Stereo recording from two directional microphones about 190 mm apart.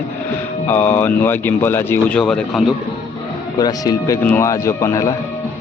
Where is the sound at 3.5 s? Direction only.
20° left (ahead or behind).